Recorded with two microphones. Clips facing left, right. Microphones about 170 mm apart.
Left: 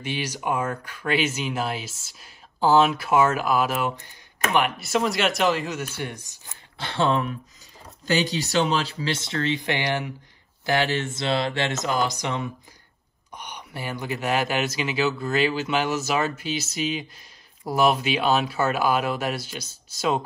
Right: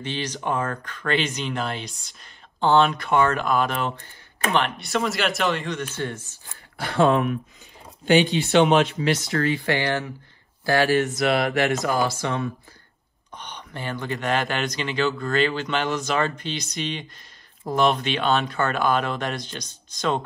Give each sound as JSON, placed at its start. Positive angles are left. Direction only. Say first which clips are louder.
{"t": 0.0, "sound": "speech", "louder": "even", "side_deg": 10}